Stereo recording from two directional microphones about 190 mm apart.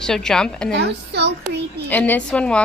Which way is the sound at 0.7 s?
65° right (ahead or behind).